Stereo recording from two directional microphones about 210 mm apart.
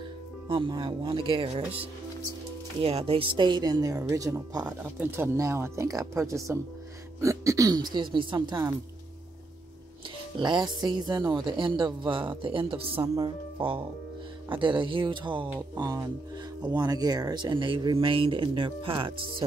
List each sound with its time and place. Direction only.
0.5 s speech: 25° right (ahead or behind)
10.4 s speech: 20° right (ahead or behind)